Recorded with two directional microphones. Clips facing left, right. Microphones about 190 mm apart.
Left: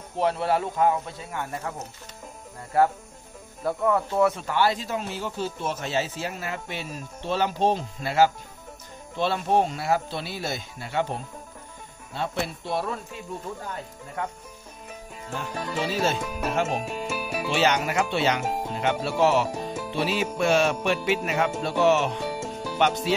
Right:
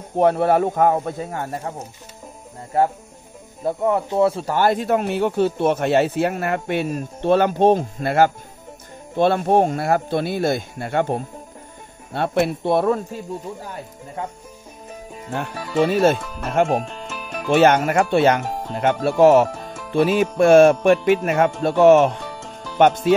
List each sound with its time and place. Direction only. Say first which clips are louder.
0.1 s speech: right 8 dB; 55° right (ahead or behind)
15.8 s speech: right 10 dB; 55° right (ahead or behind)
16.2 s speech: left 1 dB; 10° left (ahead or behind)
16.8 s music: left 2 dB; 10° left (ahead or behind)
17.5 s speech: right 9 dB; 50° right (ahead or behind)
22.2 s music: left 4 dB; 10° left (ahead or behind)
22.8 s speech: right 9 dB; 50° right (ahead or behind)